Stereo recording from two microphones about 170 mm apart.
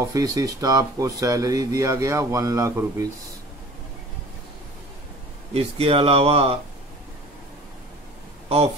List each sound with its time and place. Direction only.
0.1 s speech: 20° right (ahead or behind)
5.5 s speech: 35° right (ahead or behind)
8.5 s speech: 35° right (ahead or behind)